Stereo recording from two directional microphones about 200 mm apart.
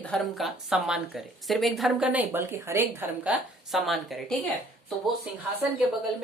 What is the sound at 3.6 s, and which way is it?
Speech, centre (ahead or behind).